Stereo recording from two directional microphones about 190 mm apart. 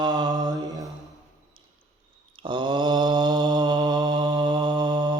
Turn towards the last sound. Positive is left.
turn(degrees=-20)  # may be behind; listen again after turning